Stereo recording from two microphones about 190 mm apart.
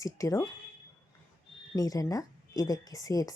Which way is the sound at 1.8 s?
20° left (ahead or behind).